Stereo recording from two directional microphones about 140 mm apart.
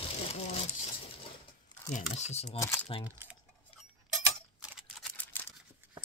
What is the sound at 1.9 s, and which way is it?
Speech, 60° left (ahead or behind).